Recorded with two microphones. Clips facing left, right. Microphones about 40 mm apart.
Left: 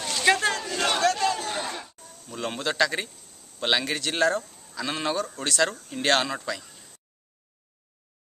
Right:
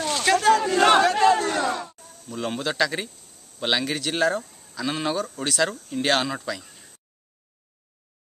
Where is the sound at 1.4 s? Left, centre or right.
Right.